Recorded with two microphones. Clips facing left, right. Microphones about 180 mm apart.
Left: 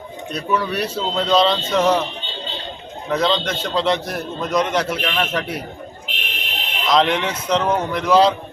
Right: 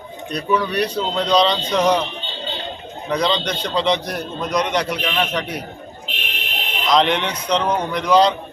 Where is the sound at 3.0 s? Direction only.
Centre (ahead or behind).